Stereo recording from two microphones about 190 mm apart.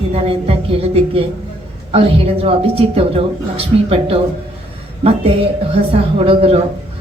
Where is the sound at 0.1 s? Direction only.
30° right (ahead or behind).